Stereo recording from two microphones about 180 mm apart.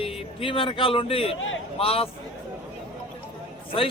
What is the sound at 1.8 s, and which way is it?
Speech, 30° left (ahead or behind).